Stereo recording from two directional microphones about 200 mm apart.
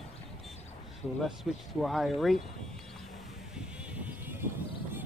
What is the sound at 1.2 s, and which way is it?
Speech, centre (ahead or behind).